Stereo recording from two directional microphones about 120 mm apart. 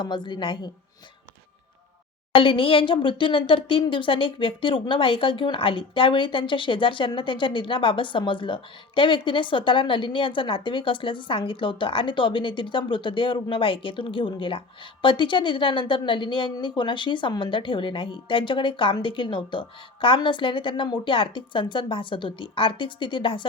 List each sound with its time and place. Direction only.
0.0 s speech: 40° left (ahead or behind)
2.3 s speech: 45° left (ahead or behind)